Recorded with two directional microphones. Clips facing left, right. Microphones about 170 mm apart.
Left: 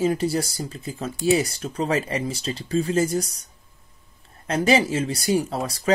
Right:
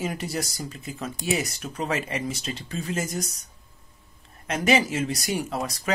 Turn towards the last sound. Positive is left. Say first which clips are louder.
# left 2 dB
turn(degrees=30)  # may be behind; listen again after turning